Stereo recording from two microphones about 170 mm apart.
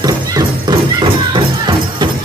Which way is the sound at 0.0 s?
20° right (ahead or behind).